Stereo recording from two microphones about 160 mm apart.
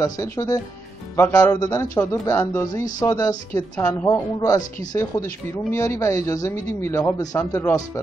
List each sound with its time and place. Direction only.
0.0 s speech: 20° left (ahead or behind)
3.7 s speech: 10° left (ahead or behind)
4.1 s speech: 20° left (ahead or behind)